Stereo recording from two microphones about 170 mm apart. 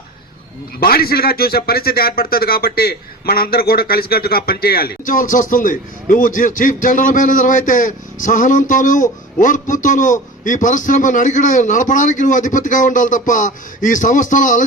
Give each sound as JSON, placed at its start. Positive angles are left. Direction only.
{"t": 0.8, "sound": "a man's voice", "side_deg": 65}